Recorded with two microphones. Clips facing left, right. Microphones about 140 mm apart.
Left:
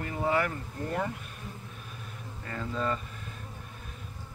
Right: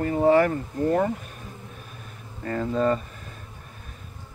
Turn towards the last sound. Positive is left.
turn(degrees=-45)  # may be behind; listen again after turning